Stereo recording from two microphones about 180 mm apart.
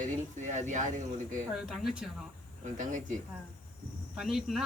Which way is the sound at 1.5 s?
Centre (ahead or behind).